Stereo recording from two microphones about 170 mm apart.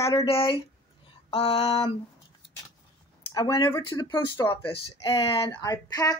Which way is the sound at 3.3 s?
25° left (ahead or behind).